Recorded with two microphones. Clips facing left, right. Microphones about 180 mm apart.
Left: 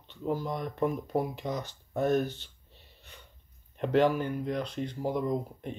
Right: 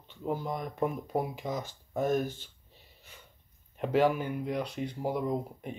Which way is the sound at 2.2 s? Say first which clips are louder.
Left 1 dB; 45° right (ahead or behind).